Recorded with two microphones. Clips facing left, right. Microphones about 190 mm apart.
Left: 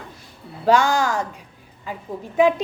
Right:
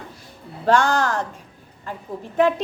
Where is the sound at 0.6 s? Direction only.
Centre (ahead or behind).